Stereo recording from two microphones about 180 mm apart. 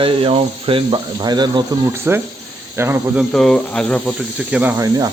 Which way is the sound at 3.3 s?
5° left (ahead or behind).